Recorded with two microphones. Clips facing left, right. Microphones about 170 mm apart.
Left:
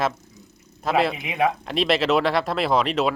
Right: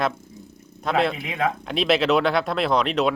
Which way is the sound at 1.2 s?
15° left (ahead or behind).